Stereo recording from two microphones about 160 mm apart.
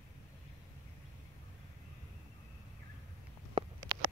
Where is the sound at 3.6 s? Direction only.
30° right (ahead or behind).